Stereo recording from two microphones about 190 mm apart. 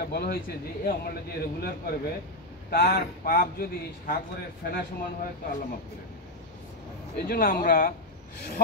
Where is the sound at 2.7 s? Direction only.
55° left (ahead or behind).